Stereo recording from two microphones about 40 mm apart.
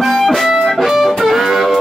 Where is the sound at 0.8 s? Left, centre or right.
Centre.